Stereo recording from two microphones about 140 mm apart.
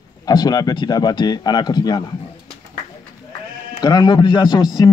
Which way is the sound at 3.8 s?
30° left (ahead or behind).